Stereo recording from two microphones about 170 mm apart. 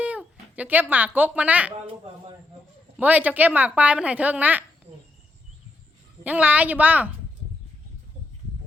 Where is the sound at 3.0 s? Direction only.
10° right (ahead or behind).